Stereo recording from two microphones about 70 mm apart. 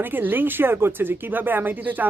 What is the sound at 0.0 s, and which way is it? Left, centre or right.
Speech, right.